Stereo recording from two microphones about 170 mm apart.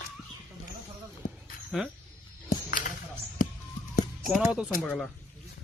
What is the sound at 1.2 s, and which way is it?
Speech, 50° left (ahead or behind).